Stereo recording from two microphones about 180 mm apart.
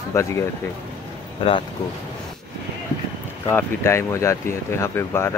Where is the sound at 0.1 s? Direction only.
15° left (ahead or behind).